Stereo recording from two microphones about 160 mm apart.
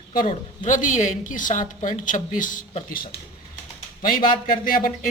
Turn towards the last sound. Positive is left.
turn(degrees=60)  # may be behind; listen again after turning